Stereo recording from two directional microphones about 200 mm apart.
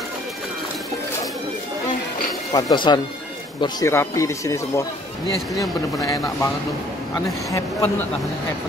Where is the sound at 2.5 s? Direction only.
20° left (ahead or behind).